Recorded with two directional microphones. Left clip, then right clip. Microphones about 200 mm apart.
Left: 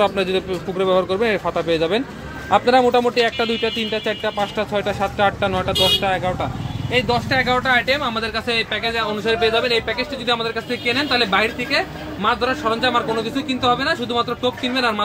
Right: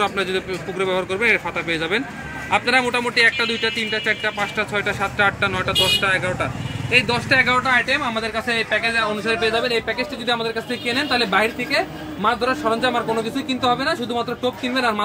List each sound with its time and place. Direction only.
0.0 s speech: 35° left (ahead or behind)
7.1 s speech: 15° left (ahead or behind); by 9.5 s 30° left (ahead or behind)
9.5 s speech: 5° left (ahead or behind)